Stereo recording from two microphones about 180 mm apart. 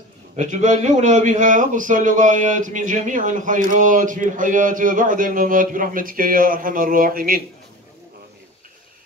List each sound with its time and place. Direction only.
0.4 s a man's voice: 40° right (ahead or behind)